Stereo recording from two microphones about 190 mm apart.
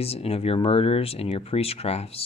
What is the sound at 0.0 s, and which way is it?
Speech, 30° left (ahead or behind).